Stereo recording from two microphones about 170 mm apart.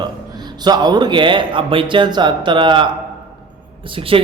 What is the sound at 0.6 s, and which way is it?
Speech, 25° right (ahead or behind).